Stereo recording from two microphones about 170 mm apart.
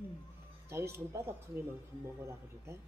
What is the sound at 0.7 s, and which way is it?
Speech, 15° right (ahead or behind).